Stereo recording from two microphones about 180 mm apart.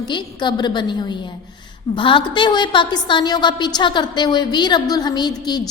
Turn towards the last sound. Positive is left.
turn(degrees=25)  # may be behind; listen again after turning